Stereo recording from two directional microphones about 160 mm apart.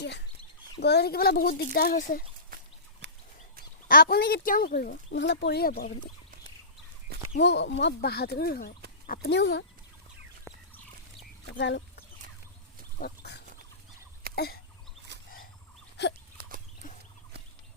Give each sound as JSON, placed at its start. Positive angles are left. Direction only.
{"t": 0.8, "sound": "speech", "side_deg": 90}
{"t": 2.5, "sound": "a sound", "side_deg": -60}
{"t": 3.0, "sound": "a sound", "side_deg": -90}
{"t": 3.8, "sound": "speech", "side_deg": 65}
{"t": 7.3, "sound": "speech", "side_deg": 90}
{"t": 11.5, "sound": "speech", "side_deg": 90}
{"t": 13.0, "sound": "speech", "side_deg": 80}
{"t": 15.1, "sound": "wild animals", "side_deg": -90}
{"t": 16.4, "sound": "a sound", "side_deg": -90}
{"t": 16.8, "sound": "fowl", "side_deg": 55}